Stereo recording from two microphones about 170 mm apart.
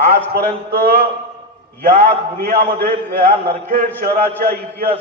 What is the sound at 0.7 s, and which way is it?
A man's voice, 60° right (ahead or behind).